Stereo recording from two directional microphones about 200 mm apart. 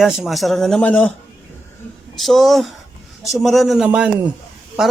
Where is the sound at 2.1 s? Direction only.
Centre (ahead or behind).